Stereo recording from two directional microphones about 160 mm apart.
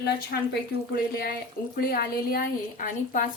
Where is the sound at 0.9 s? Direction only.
70° left (ahead or behind).